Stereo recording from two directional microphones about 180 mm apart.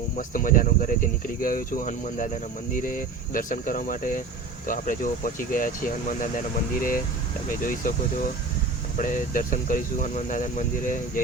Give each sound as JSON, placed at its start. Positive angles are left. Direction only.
{"t": 0.2, "sound": "speech", "side_deg": 50}